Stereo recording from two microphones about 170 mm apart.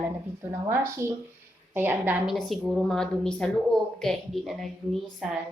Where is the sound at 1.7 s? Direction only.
10° right (ahead or behind).